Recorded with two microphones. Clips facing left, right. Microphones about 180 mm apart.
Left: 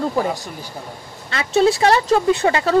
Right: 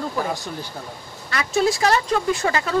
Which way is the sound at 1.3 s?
25° left (ahead or behind).